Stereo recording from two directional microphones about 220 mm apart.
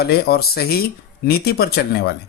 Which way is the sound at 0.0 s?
45° left (ahead or behind).